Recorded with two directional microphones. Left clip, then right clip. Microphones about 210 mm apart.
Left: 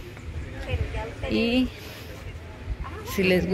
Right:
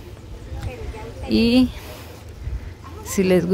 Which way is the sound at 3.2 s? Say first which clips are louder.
Right 4 dB; 20° right (ahead or behind).